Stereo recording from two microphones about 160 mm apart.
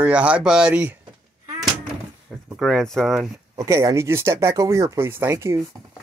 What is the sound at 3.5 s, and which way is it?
Speech, 20° right (ahead or behind).